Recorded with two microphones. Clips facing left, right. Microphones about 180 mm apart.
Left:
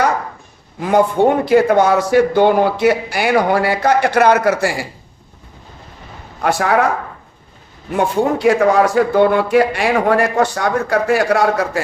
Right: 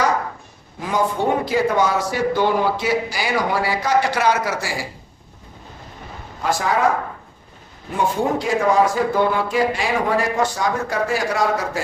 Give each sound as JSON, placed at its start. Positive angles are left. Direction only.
{"t": 0.8, "sound": "speech", "side_deg": 60}
{"t": 6.4, "sound": "speech", "side_deg": 65}
{"t": 7.9, "sound": "speech", "side_deg": 65}